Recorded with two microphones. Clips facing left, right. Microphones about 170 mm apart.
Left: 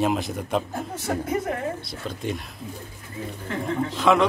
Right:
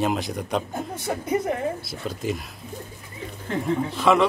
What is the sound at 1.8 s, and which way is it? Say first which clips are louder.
Speech: right 2 dB; 5° right (ahead or behind).